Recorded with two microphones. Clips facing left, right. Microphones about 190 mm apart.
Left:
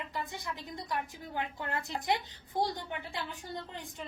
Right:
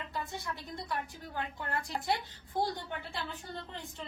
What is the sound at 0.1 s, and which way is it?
A woman's voice, 15° left (ahead or behind).